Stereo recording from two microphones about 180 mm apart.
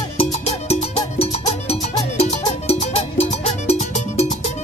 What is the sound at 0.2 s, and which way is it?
Music, 35° left (ahead or behind).